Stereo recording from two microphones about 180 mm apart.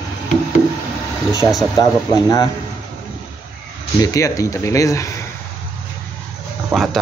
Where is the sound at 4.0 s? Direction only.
20° left (ahead or behind).